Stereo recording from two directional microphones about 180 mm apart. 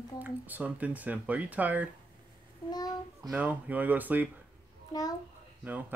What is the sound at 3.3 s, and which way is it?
Speech, 10° right (ahead or behind).